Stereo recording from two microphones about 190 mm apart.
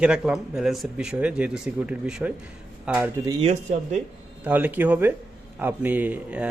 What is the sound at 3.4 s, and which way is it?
Speech, 40° right (ahead or behind).